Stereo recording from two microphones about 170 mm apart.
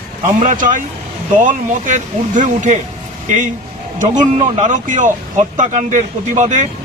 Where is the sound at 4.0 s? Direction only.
45° right (ahead or behind).